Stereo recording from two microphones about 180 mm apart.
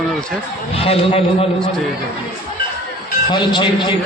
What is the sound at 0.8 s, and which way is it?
Speech, 35° left (ahead or behind).